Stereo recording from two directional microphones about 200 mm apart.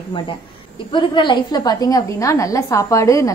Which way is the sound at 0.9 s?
25° left (ahead or behind).